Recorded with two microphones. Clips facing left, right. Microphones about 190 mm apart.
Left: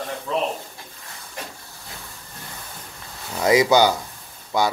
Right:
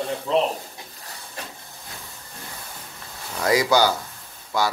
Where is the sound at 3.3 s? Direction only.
20° left (ahead or behind).